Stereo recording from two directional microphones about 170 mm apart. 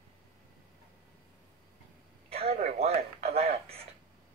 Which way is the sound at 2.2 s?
35° right (ahead or behind).